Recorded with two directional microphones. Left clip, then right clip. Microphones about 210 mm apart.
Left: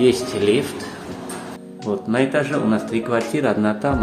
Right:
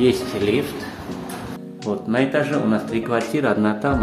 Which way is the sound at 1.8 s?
5° left (ahead or behind).